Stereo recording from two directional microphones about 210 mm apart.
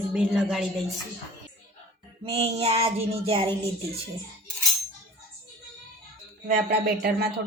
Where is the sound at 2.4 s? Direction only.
30° right (ahead or behind).